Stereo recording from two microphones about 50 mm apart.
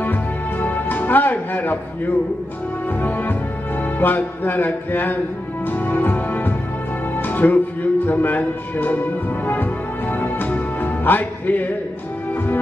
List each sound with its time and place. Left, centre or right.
0.0 s music: left
4.0 s speech: left
5.7 s music: left
7.2 s speech: left
9.5 s music: left